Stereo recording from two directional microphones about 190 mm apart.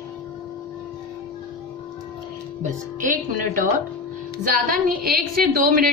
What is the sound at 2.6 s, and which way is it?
Speech, 45° right (ahead or behind).